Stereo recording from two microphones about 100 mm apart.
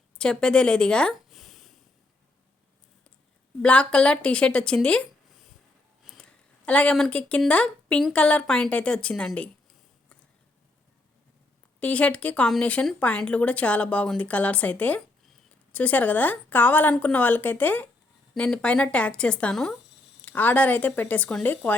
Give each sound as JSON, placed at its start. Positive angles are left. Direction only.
{"t": 0.2, "sound": "speech", "side_deg": 5}
{"t": 3.6, "sound": "a woman's voice", "side_deg": 10}
{"t": 6.1, "sound": "a sound", "side_deg": 10}
{"t": 7.1, "sound": "a woman's voice", "side_deg": 15}
{"t": 11.8, "sound": "a woman's voice", "side_deg": 15}